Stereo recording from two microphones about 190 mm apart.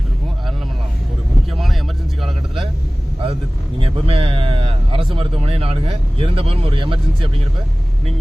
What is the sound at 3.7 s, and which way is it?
Speech, 30° right (ahead or behind).